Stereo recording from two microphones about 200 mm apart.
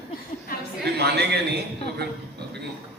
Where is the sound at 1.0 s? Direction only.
55° right (ahead or behind).